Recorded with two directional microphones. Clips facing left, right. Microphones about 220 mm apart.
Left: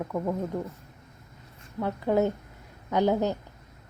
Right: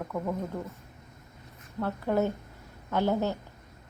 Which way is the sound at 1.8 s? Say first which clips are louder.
Left 3 dB; 15° left (ahead or behind).